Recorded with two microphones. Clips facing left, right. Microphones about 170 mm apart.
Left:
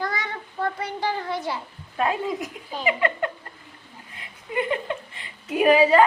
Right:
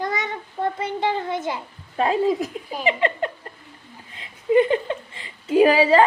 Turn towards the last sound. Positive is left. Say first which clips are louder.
# right 2 dB
turn(degrees=-30)  # may be behind; listen again after turning